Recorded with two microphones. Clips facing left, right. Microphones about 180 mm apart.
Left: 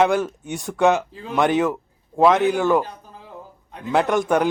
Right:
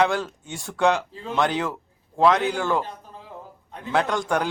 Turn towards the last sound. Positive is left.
turn(degrees=20)  # may be behind; listen again after turning